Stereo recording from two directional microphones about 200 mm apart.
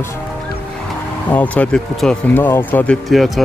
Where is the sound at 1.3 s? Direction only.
5° left (ahead or behind).